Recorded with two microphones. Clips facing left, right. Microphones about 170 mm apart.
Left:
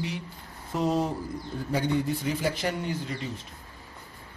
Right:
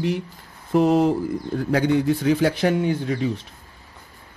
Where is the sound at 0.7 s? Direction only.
65° right (ahead or behind).